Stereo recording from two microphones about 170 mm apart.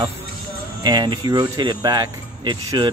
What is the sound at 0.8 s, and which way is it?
Speech, 25° right (ahead or behind).